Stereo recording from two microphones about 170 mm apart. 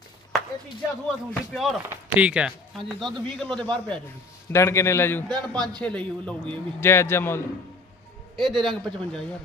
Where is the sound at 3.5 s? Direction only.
30° right (ahead or behind).